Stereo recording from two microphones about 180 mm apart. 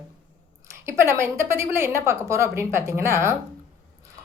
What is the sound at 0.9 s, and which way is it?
A woman's voice, 15° right (ahead or behind).